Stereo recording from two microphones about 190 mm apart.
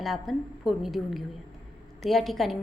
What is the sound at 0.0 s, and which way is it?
A woman's voice, centre (ahead or behind).